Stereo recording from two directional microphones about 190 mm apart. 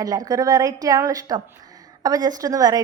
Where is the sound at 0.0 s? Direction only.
20° right (ahead or behind).